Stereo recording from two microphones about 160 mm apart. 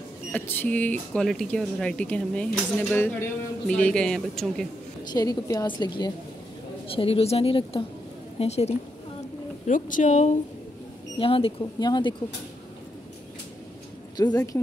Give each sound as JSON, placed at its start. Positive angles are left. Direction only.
{"t": 0.3, "sound": "speech", "side_deg": 10}
{"t": 5.1, "sound": "a woman's voice", "side_deg": 25}
{"t": 9.7, "sound": "speech", "side_deg": 55}
{"t": 11.1, "sound": "speech", "side_deg": 35}
{"t": 14.1, "sound": "a woman's voice", "side_deg": 25}